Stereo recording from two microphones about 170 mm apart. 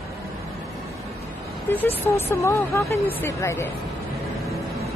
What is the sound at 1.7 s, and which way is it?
Speech, 15° left (ahead or behind).